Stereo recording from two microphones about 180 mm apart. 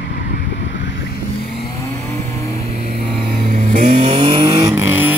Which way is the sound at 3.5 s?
45° right (ahead or behind).